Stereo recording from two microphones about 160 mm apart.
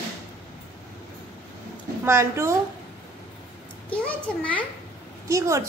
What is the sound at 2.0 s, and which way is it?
Speech, 15° right (ahead or behind).